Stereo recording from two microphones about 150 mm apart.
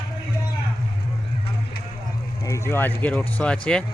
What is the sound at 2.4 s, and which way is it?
Speech, 20° left (ahead or behind).